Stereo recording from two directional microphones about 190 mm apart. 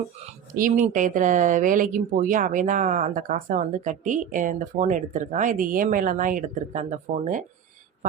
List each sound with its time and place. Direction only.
0.5 s speech: 45° right (ahead or behind)